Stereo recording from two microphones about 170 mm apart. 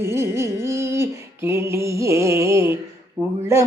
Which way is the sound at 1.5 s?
15° right (ahead or behind).